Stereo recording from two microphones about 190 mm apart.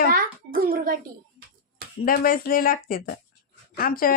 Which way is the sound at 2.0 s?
50° left (ahead or behind).